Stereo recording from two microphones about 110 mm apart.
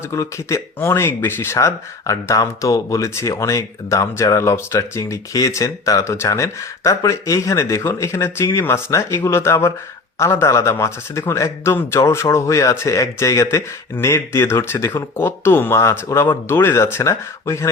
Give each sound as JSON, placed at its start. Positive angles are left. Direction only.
{"t": 0.1, "sound": "speech", "side_deg": 25}